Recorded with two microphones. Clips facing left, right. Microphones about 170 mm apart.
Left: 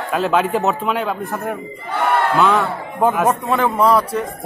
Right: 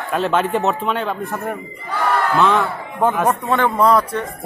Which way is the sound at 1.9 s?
25° left (ahead or behind).